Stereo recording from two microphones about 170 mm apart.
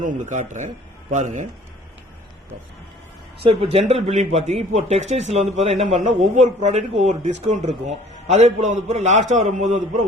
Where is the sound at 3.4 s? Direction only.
35° right (ahead or behind).